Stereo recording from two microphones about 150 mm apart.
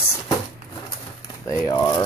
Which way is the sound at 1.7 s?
30° left (ahead or behind).